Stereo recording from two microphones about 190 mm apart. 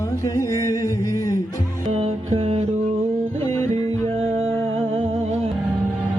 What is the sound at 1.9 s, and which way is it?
Music, 30° right (ahead or behind).